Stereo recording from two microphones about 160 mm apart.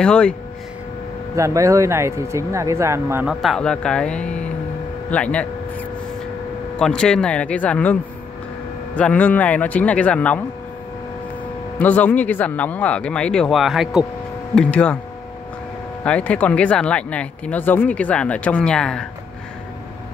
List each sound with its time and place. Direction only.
0.0 s speech: 5° left (ahead or behind)
1.3 s speech: 20° right (ahead or behind)
3.3 s speech: centre (ahead or behind)
11.8 s speech: 10° left (ahead or behind)
16.0 s speech: 10° left (ahead or behind)